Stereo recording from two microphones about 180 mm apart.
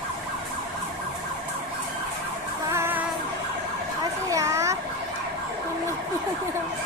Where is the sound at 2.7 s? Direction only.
10° right (ahead or behind).